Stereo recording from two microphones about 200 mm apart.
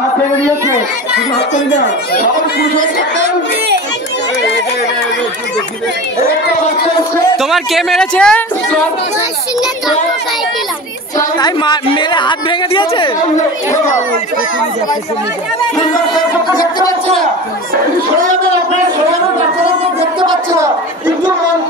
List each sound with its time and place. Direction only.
7.3 s speech: centre (ahead or behind)
11.1 s speech: 20° left (ahead or behind)
19.8 s a sound: 25° right (ahead or behind)